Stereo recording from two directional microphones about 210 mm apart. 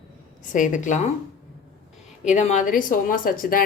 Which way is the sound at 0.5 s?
35° left (ahead or behind).